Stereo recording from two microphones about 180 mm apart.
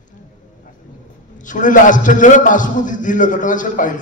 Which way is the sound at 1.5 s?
45° left (ahead or behind).